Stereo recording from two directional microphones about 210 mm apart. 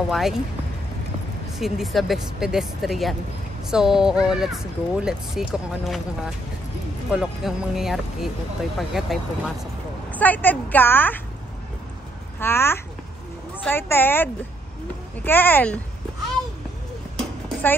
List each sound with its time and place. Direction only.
0.1 s speech: centre (ahead or behind)
1.6 s a woman's voice: centre (ahead or behind)
12.4 s a woman's voice: 10° left (ahead or behind)
17.2 s a sound: 10° left (ahead or behind)